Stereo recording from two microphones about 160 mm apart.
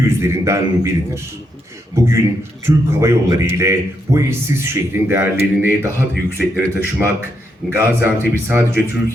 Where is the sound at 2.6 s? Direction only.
15° right (ahead or behind).